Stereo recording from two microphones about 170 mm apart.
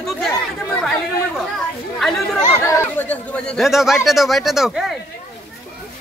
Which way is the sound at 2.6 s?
15° left (ahead or behind).